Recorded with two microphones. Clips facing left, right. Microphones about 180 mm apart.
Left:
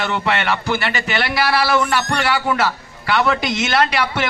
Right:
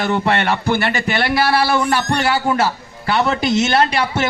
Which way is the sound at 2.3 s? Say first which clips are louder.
Right 2 dB; 30° right (ahead or behind).